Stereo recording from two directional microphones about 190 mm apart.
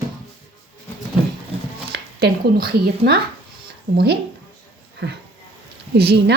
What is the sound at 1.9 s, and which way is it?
Speech, 55° right (ahead or behind).